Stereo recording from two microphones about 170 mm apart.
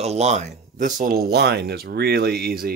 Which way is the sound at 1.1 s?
70° right (ahead or behind).